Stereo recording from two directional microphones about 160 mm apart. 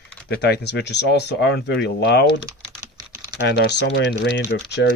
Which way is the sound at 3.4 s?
90° left.